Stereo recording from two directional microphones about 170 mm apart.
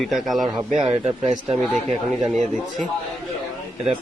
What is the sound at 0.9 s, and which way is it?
Speech, 40° right (ahead or behind).